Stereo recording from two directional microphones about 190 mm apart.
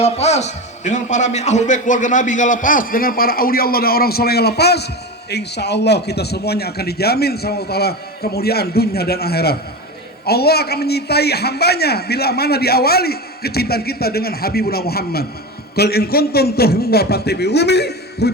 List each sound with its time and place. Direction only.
0.0 s a man's voice: 35° left (ahead or behind); by 18.3 s 60° left (ahead or behind)